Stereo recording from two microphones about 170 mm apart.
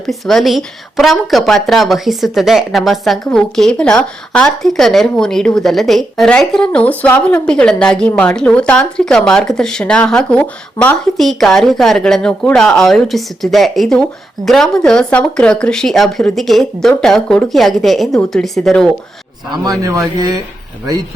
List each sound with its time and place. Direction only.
0.0 s speech: centre (ahead or behind)
19.8 s speech: 20° right (ahead or behind)